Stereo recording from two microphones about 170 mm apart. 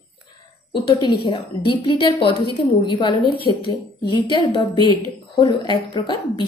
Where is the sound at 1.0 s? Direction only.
30° left (ahead or behind).